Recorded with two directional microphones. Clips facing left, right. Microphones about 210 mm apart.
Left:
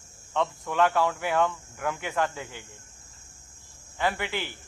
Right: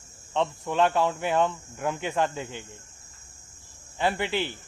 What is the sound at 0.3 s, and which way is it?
Speech, 20° right (ahead or behind).